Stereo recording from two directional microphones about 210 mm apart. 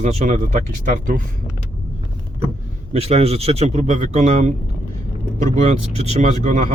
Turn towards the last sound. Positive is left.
turn(degrees=-35)  # may be behind; listen again after turning